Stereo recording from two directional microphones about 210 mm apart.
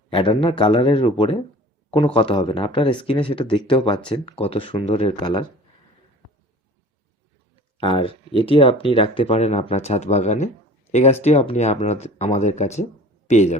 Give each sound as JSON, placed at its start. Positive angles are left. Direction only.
{"t": 0.1, "sound": "speech", "side_deg": 25}
{"t": 7.8, "sound": "speech", "side_deg": 25}